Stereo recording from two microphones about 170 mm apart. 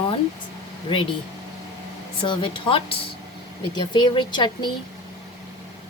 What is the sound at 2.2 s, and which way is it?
Speech, 30° left (ahead or behind).